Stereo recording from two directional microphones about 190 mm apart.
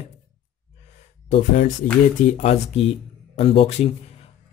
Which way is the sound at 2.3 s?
35° left (ahead or behind).